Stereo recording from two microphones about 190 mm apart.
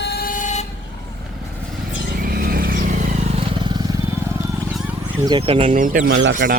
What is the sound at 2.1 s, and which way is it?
Neigh, 50° right (ahead or behind).